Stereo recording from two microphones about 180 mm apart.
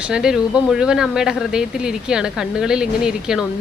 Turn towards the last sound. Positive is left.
turn(degrees=-5)  # may be behind; listen again after turning